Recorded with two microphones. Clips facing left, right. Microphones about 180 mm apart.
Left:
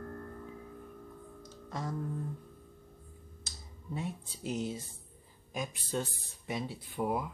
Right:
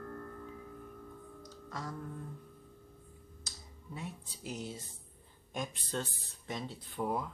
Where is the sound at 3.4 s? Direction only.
25° left (ahead or behind).